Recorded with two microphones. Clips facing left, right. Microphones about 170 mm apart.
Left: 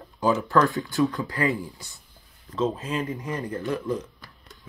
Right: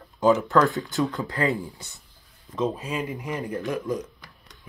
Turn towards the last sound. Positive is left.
turn(degrees=-15)  # may be behind; listen again after turning